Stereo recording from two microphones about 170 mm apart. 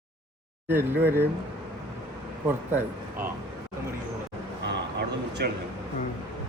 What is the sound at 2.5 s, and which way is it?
Speech, 10° right (ahead or behind).